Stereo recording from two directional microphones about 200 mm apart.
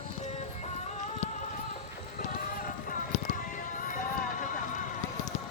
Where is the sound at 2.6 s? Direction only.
45° left (ahead or behind).